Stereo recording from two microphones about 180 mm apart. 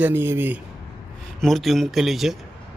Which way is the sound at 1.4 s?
Centre (ahead or behind).